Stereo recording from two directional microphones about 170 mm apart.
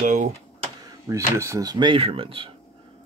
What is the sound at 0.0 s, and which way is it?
Computer keyboard, 45° right (ahead or behind).